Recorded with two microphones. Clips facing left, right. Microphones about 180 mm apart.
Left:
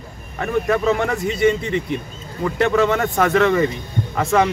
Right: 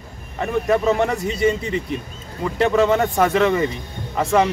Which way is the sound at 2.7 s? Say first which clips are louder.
Right 1 dB; 10° right (ahead or behind).